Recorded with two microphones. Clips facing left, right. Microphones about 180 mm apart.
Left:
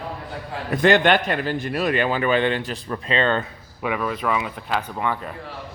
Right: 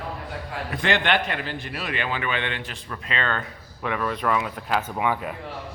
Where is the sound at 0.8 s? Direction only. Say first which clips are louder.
Left 7 dB; 45° left (ahead or behind); by 3.4 s 25° left (ahead or behind).